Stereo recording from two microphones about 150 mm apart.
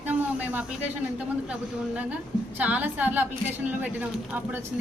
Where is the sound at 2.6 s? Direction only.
10° right (ahead or behind).